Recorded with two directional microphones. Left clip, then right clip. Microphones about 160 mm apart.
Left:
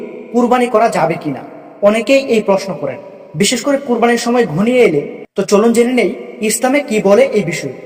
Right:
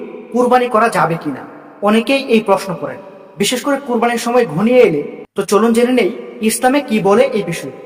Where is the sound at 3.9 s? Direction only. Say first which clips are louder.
Left 3 dB; 10° left (ahead or behind).